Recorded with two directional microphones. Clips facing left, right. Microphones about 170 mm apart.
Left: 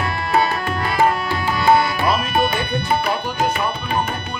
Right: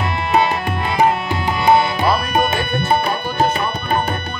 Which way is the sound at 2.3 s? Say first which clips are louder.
Right 1 dB; 45° right (ahead or behind).